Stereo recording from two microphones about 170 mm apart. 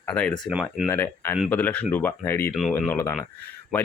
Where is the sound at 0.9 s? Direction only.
15° left (ahead or behind).